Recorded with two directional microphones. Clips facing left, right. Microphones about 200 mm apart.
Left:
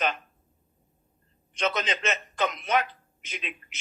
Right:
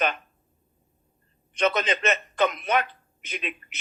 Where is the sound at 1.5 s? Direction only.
60° right (ahead or behind).